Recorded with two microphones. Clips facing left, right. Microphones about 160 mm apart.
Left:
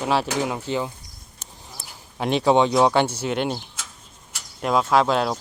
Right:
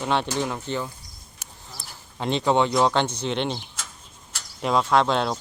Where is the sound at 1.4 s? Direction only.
10° right (ahead or behind).